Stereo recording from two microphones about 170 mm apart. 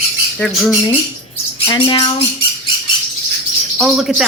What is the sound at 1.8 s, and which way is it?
Speech, 25° left (ahead or behind).